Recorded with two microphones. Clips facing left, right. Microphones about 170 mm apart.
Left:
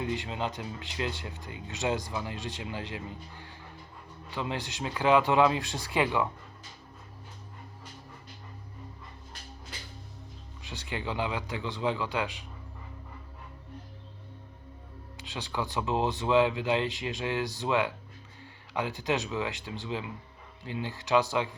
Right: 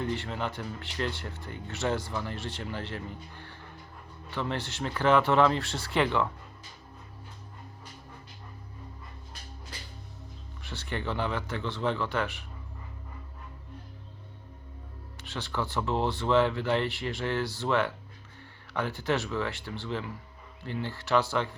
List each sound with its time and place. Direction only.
0.0 s speech: 15° left (ahead or behind)
10.6 s speech: 15° left (ahead or behind)
15.2 s speech: 15° left (ahead or behind)